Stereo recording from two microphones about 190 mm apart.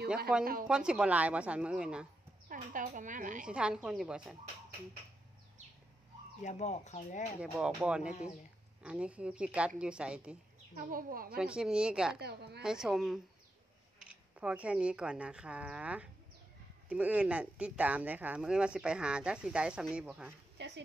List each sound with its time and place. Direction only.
0.7 s speech: 5° right (ahead or behind)
2.4 s a woman's voice: 45° right (ahead or behind)
3.4 s speech: 5° right (ahead or behind)
6.4 s speech: 35° left (ahead or behind)
7.3 s speech: 5° right (ahead or behind)
10.7 s a woman's voice: 45° right (ahead or behind)
11.3 s speech: 5° right (ahead or behind)
12.2 s a woman's voice: 60° right (ahead or behind)
12.6 s speech: 5° right (ahead or behind)
20.5 s a sound: 65° right (ahead or behind)